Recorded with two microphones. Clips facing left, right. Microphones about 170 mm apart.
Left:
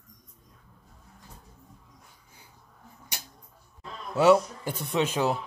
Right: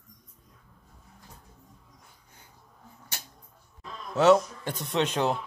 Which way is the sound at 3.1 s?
15° left (ahead or behind).